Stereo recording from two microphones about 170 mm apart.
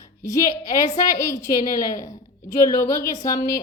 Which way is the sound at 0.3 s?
20° left (ahead or behind).